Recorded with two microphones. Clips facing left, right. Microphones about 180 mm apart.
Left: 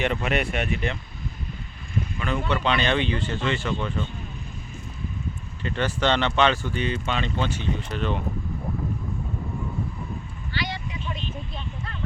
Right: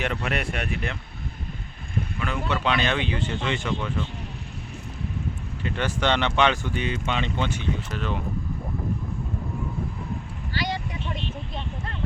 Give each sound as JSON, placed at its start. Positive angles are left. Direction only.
{"t": 0.0, "sound": "speech", "side_deg": 0}
{"t": 2.1, "sound": "speech", "side_deg": -5}
{"t": 3.8, "sound": "speech", "side_deg": -5}
{"t": 5.6, "sound": "speech", "side_deg": -10}
{"t": 7.8, "sound": "speech", "side_deg": -5}
{"t": 10.5, "sound": "vehicle", "side_deg": -45}